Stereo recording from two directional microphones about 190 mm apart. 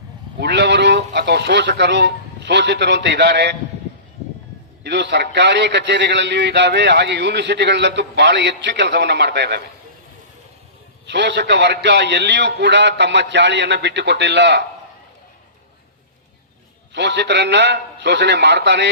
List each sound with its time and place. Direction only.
0.3 s speech: 60° right (ahead or behind)
4.8 s a man's voice: 65° right (ahead or behind)
11.0 s a man's voice: 65° right (ahead or behind)
16.9 s a man's voice: 65° right (ahead or behind)